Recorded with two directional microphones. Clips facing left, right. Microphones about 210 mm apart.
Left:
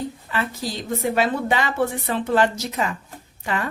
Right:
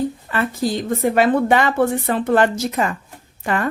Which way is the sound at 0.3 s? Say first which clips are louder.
Right 1 dB; 50° right (ahead or behind).